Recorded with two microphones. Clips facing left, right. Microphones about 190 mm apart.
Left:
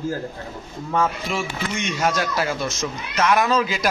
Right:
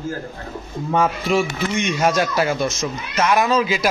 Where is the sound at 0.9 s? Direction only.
20° right (ahead or behind).